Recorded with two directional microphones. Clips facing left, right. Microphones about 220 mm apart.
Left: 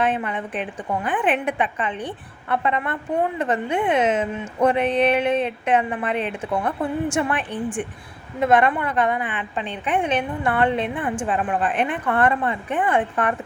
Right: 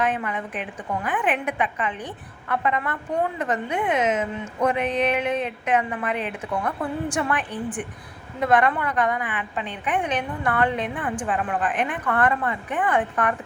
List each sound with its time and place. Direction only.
0.0 s a woman's voice: 30° left (ahead or behind)